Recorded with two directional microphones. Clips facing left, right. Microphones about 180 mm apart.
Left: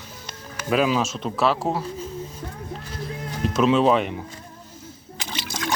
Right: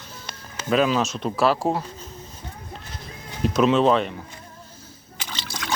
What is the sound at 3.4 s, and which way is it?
Speech, centre (ahead or behind).